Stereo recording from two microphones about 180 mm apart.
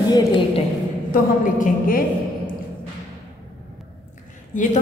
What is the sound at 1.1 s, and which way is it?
A woman's voice, 50° left (ahead or behind).